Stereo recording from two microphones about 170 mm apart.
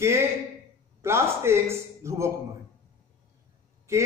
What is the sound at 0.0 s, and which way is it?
A man's voice, 15° right (ahead or behind).